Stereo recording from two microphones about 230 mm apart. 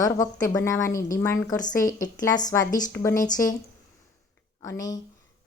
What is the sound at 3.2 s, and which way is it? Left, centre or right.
Speech, centre.